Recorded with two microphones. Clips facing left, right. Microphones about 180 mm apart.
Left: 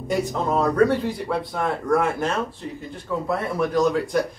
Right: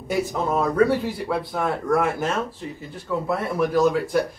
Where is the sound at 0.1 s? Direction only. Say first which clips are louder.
Even; 5° right (ahead or behind).